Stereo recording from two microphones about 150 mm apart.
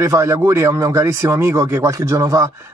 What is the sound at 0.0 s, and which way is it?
A man's voice, 20° right (ahead or behind).